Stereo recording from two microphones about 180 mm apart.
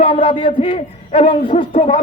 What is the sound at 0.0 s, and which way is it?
A man's voice, 30° left (ahead or behind).